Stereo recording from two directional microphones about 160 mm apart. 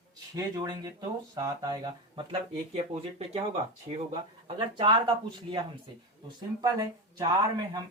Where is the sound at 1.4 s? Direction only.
25° right (ahead or behind).